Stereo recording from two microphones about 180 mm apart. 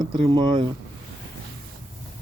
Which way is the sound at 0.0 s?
30° right (ahead or behind).